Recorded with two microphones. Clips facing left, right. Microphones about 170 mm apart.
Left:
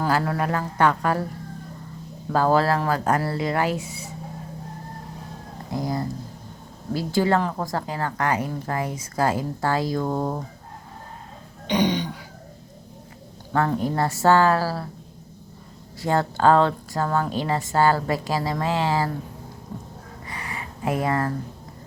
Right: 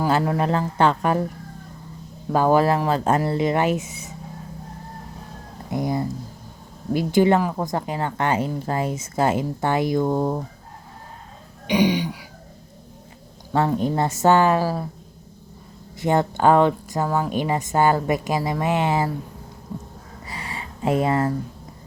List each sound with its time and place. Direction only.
0.1 s a woman's voice: 20° right (ahead or behind)
2.3 s a woman's voice: 15° right (ahead or behind)
5.7 s a woman's voice: 20° right (ahead or behind)
11.7 s speech: 10° right (ahead or behind)
13.5 s a woman's voice: 20° right (ahead or behind)
16.0 s speech: 20° right (ahead or behind)
20.3 s a sound: 30° right (ahead or behind)